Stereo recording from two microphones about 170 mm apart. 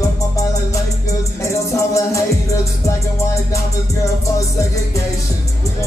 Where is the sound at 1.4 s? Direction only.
20° left (ahead or behind).